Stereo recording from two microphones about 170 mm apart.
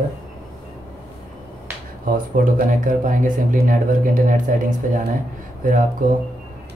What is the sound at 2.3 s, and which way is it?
Speech, 50° right (ahead or behind).